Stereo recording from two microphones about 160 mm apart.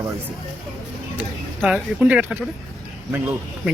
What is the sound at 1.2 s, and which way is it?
Speech, 5° right (ahead or behind).